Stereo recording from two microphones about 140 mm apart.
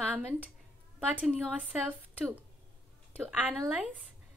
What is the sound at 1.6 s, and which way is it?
A woman's voice, 10° right (ahead or behind).